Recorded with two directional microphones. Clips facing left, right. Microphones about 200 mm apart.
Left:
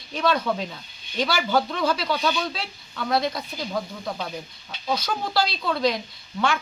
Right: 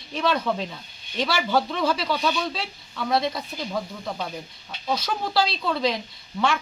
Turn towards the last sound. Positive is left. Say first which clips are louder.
# even
turn(degrees=0)  # may be behind; listen again after turning